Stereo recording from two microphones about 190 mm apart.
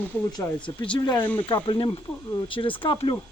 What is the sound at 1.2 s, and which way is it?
Speech, 10° left (ahead or behind).